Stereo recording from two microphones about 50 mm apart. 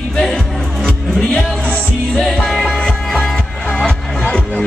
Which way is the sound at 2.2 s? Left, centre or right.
Centre.